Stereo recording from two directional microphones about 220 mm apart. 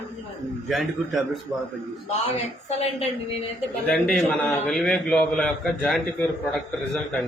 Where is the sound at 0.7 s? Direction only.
Centre (ahead or behind).